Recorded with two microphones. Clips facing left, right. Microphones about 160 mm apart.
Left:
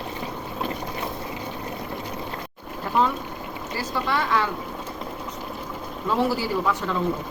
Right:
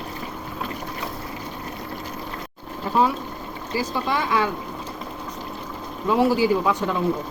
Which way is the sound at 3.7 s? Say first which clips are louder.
Right 2 dB; 15° right (ahead or behind).